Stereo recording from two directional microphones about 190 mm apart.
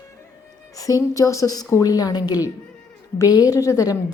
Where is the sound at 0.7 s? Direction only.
20° left (ahead or behind).